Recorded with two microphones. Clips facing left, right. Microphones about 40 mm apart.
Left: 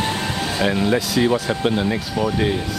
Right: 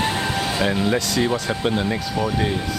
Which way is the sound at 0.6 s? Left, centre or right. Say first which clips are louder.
Left 3 dB; centre.